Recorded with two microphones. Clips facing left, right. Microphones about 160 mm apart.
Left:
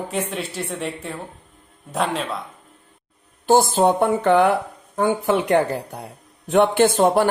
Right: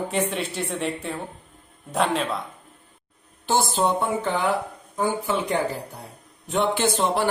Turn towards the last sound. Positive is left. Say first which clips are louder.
# left 7 dB
turn(degrees=50)  # may be behind; listen again after turning